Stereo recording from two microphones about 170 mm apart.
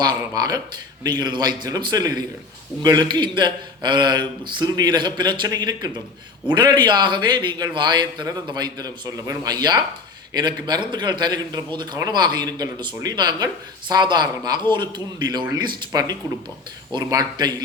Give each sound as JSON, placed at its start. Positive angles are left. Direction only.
{"t": 0.0, "sound": "a man's voice", "side_deg": -25}